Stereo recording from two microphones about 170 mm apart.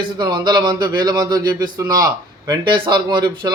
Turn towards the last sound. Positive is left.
turn(degrees=-25)  # may be behind; listen again after turning